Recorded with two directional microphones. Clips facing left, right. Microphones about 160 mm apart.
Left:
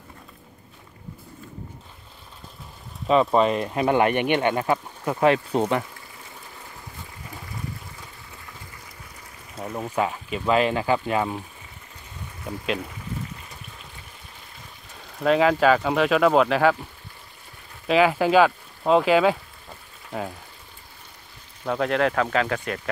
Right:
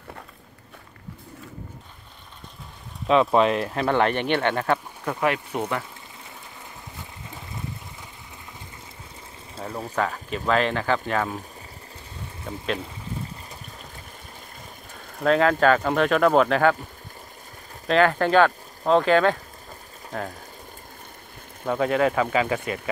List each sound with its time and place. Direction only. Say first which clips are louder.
3.1 s speech: even; centre (ahead or behind)
3.8 s speech: left 2 dB; 10° left (ahead or behind)
5.2 s speech: left 6 dB; 25° left (ahead or behind)
9.7 s speech: left 1 dB; 10° left (ahead or behind)
15.2 s speech: even; 5° left (ahead or behind)
17.8 s speech: left 1 dB; 5° left (ahead or behind)
21.6 s speech: right 1 dB; centre (ahead or behind)